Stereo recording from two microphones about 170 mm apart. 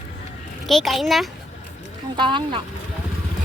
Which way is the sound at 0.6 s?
Centre (ahead or behind).